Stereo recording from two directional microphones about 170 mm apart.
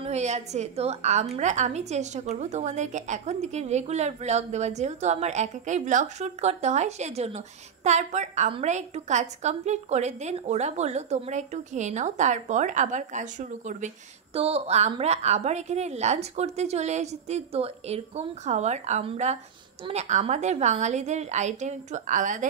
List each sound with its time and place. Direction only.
0.0 s a woman's voice: 40° right (ahead or behind)